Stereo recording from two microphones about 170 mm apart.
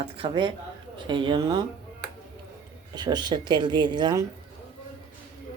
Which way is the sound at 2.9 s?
25° right (ahead or behind).